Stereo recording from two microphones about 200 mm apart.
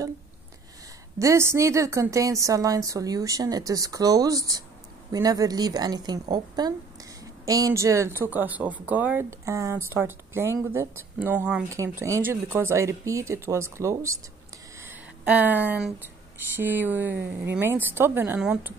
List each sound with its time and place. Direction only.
1.2 s a woman's voice: 15° right (ahead or behind)